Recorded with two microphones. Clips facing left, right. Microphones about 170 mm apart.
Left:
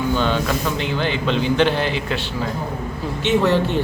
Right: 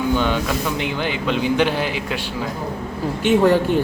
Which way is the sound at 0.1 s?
15° right (ahead or behind).